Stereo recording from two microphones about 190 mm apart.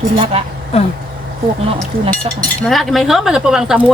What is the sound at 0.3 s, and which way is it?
Speech, 30° right (ahead or behind).